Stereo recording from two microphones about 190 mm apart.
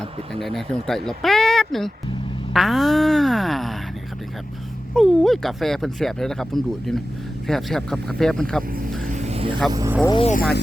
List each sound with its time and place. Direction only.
0.0 s speech: centre (ahead or behind)
4.9 s speech: centre (ahead or behind)
9.0 s vehicle: 35° right (ahead or behind)
9.6 s speech: 15° right (ahead or behind)
10.1 s speech: 30° left (ahead or behind)
10.3 s speech: 55° left (ahead or behind)